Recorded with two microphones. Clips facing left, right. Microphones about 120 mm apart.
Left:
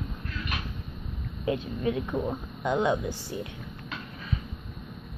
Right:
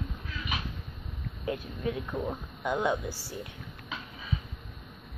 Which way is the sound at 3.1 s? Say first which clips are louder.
Left 4 dB; 10° right (ahead or behind).